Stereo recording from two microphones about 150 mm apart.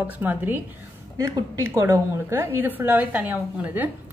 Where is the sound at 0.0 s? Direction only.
10° right (ahead or behind).